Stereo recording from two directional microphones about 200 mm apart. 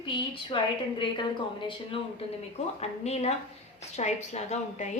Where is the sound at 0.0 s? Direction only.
25° left (ahead or behind).